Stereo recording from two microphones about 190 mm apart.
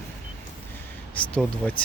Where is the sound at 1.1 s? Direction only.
5° left (ahead or behind).